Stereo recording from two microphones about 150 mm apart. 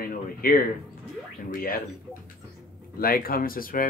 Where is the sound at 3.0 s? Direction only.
75° left (ahead or behind).